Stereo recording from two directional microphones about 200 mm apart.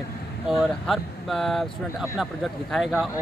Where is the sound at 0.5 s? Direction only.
Centre (ahead or behind).